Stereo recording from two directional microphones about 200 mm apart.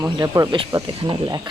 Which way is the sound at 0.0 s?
15° right (ahead or behind).